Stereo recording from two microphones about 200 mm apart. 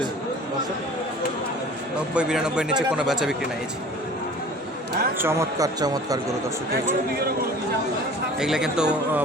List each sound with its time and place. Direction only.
2.1 s a man's voice: 5° right (ahead or behind)
5.1 s speech: 10° right (ahead or behind)
8.4 s a man's voice: centre (ahead or behind)